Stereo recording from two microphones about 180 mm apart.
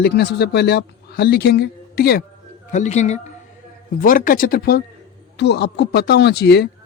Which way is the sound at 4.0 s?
50° left (ahead or behind).